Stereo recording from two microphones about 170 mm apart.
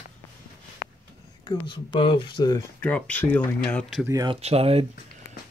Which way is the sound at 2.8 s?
10° left (ahead or behind).